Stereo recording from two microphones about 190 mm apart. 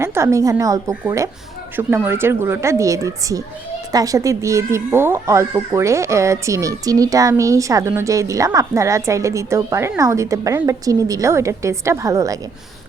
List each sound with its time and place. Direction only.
0.0 s speech: 15° right (ahead or behind)